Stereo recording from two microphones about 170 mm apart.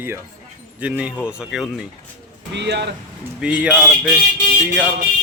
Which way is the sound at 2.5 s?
85° right.